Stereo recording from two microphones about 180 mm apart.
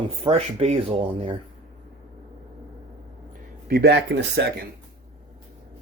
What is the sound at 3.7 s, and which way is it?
Speech, 65° right (ahead or behind).